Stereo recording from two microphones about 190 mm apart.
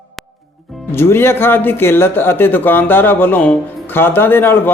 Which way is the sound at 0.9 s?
10° left (ahead or behind).